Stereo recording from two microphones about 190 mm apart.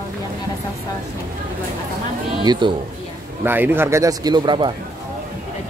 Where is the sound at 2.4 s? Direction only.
25° right (ahead or behind).